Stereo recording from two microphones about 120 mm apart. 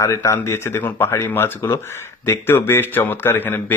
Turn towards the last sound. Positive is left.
turn(degrees=15)  # may be behind; listen again after turning